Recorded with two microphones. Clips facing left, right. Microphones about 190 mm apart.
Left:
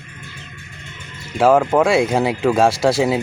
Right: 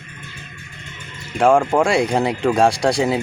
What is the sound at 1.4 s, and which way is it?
Speech, 5° left (ahead or behind).